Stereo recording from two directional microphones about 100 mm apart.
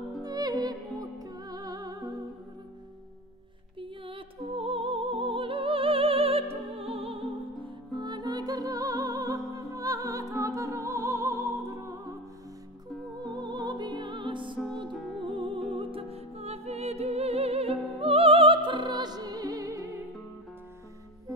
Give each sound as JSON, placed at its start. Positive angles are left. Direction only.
{"t": 0.2, "sound": "music", "side_deg": -40}
{"t": 3.8, "sound": "music", "side_deg": -65}
{"t": 7.9, "sound": "music", "side_deg": -45}
{"t": 13.2, "sound": "music", "side_deg": -50}